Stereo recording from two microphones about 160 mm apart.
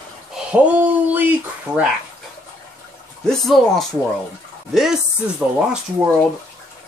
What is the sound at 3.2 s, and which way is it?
Speech, centre (ahead or behind).